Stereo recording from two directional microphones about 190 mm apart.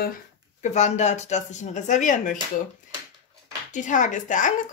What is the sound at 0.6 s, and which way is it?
Speech, 35° left (ahead or behind).